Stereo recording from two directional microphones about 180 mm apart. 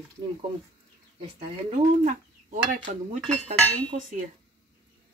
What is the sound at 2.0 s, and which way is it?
Speech, 45° right (ahead or behind).